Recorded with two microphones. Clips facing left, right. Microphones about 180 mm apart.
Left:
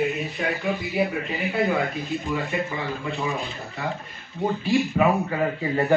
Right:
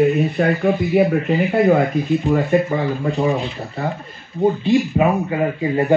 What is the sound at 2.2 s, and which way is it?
A man's voice, 50° right (ahead or behind).